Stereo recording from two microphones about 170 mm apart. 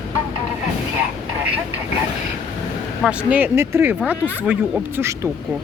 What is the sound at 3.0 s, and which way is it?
A woman's voice, 10° right (ahead or behind).